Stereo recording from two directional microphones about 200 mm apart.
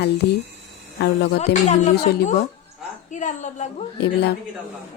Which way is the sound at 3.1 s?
35° left (ahead or behind).